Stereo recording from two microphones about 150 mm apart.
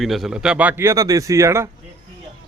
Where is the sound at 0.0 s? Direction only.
Centre (ahead or behind); by 1.7 s 20° right (ahead or behind).